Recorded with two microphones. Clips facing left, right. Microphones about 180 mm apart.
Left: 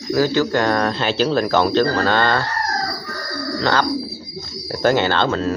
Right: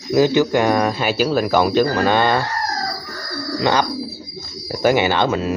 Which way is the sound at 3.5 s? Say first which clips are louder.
Right 2 dB; 15° right (ahead or behind).